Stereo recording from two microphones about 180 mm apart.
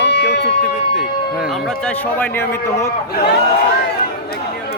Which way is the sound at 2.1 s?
10° left (ahead or behind).